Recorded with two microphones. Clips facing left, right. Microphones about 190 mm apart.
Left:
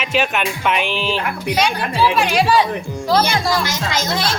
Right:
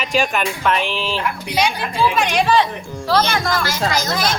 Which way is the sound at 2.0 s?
5° left (ahead or behind).